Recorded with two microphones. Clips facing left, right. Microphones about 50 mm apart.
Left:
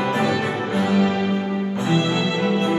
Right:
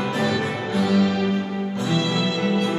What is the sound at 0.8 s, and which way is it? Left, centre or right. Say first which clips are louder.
Music: even; left.